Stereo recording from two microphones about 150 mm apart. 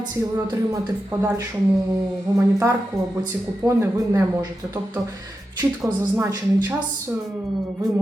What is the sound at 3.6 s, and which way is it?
Speech, 20° right (ahead or behind).